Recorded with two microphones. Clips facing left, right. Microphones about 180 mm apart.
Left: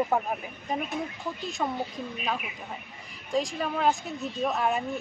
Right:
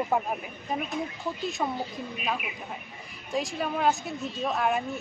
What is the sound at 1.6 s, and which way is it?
Speech, 10° right (ahead or behind).